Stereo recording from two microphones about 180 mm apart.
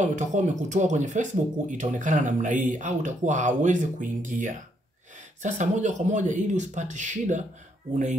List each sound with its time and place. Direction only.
0.0 s speech: 45° right (ahead or behind)